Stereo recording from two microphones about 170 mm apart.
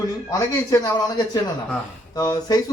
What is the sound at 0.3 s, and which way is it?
Speech, 20° left (ahead or behind).